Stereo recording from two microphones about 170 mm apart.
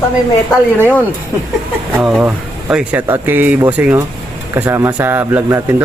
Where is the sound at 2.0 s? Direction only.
5° right (ahead or behind).